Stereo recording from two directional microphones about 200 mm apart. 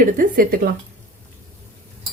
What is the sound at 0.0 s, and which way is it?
Speech, 45° right (ahead or behind).